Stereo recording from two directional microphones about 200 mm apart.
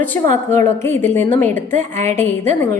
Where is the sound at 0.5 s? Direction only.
10° left (ahead or behind).